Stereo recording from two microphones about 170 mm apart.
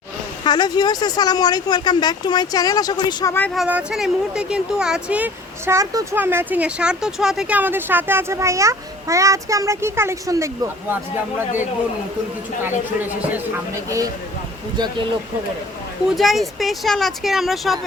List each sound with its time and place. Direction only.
0.4 s speech: 25° left (ahead or behind)
3.5 s speech: 5° right (ahead or behind)
12.6 s speech: 10° right (ahead or behind)
16.0 s speech: centre (ahead or behind)